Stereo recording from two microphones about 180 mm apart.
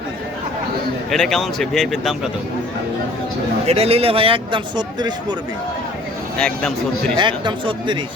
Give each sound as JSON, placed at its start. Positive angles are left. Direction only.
{"t": 1.1, "sound": "speech", "side_deg": 0}
{"t": 3.7, "sound": "a man's voice", "side_deg": -35}
{"t": 6.4, "sound": "speech", "side_deg": 5}
{"t": 7.2, "sound": "speech", "side_deg": -25}